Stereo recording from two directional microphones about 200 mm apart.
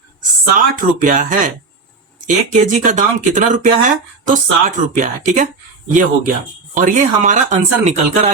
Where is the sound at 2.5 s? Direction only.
40° right (ahead or behind).